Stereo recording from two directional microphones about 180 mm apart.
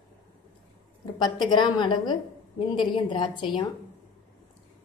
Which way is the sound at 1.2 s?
25° left (ahead or behind).